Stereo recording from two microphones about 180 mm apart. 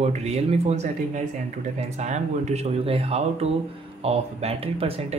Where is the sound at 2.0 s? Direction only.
40° right (ahead or behind).